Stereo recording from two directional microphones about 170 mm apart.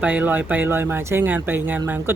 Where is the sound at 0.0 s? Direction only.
10° right (ahead or behind).